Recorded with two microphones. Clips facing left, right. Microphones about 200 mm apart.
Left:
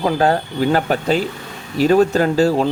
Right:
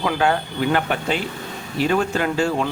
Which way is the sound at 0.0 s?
35° left (ahead or behind).